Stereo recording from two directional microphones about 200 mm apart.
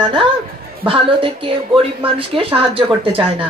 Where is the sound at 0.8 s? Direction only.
25° right (ahead or behind).